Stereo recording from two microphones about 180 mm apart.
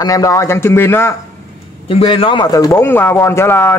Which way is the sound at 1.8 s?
30° left (ahead or behind).